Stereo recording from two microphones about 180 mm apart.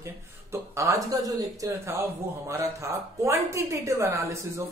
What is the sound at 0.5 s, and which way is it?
Speech, 15° right (ahead or behind).